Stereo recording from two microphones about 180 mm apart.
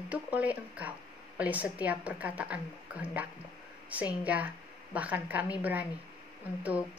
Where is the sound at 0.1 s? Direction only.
10° right (ahead or behind).